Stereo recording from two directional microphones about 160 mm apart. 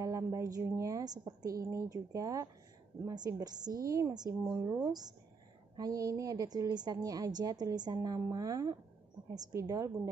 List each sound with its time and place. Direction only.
0.0 s a woman's voice: 20° right (ahead or behind)